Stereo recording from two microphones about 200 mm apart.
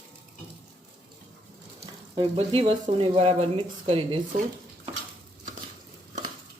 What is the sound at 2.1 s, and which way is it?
A woman's voice, 30° right (ahead or behind).